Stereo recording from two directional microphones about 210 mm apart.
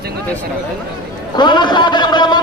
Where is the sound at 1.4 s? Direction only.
20° left (ahead or behind).